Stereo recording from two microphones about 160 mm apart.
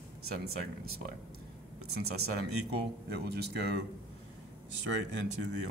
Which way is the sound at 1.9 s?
90° right.